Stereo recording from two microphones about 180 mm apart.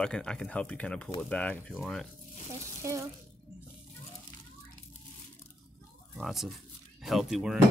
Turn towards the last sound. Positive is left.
turn(degrees=-5)  # may be behind; listen again after turning